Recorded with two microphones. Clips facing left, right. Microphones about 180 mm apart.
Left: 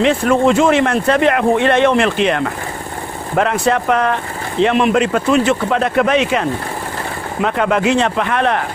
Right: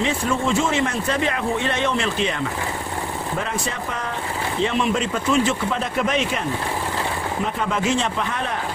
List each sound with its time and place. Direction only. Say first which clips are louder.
0.0 s speech: left 9 dB; 70° left (ahead or behind)
7.4 s speech: left 9 dB; 70° left (ahead or behind)